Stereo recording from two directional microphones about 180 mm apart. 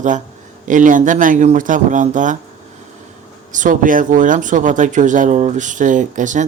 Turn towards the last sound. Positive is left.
turn(degrees=-45)  # may be behind; listen again after turning